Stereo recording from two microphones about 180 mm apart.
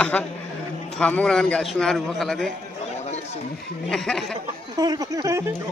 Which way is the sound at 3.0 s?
35° left (ahead or behind).